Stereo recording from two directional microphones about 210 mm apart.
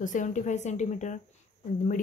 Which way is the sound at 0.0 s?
35° left (ahead or behind).